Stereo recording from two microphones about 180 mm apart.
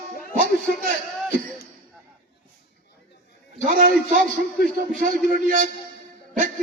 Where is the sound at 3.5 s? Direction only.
45° right (ahead or behind).